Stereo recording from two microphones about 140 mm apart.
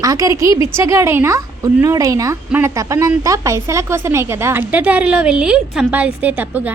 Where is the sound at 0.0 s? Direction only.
25° right (ahead or behind).